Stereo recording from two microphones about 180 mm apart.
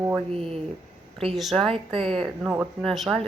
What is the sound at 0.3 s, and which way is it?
A woman's voice, 5° left (ahead or behind).